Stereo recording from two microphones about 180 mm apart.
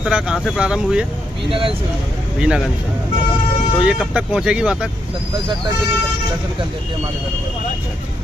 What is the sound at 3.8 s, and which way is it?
Speech, 5° right (ahead or behind).